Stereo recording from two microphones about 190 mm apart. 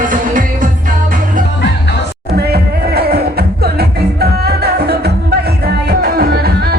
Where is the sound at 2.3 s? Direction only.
55° right (ahead or behind).